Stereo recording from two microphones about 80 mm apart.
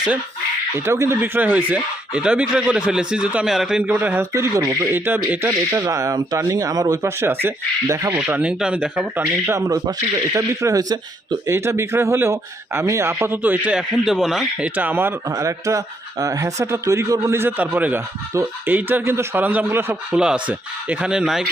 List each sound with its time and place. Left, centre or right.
0.9 s a man's voice: right; by 3.8 s centre
3.8 s speech: right
4.3 s a man's voice: right
5.7 s speech: right
7.2 s a man's voice: right
8.3 s speech: centre
9.5 s speech: right
11.4 s a man's voice: right
13.7 s speech: centre
14.6 s speech: right
15.3 s speech: right
17.6 s speech: centre
19.5 s speech: right